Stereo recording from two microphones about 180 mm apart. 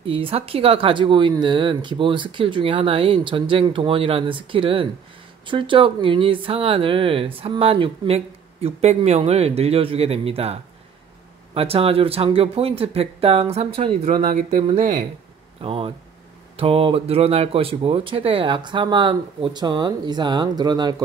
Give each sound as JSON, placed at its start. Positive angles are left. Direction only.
{"t": 0.0, "sound": "speech", "side_deg": -30}
{"t": 14.2, "sound": "speech", "side_deg": -45}
{"t": 15.6, "sound": "speech", "side_deg": -30}